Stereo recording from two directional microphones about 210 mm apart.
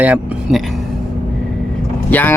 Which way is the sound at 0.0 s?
5° right (ahead or behind).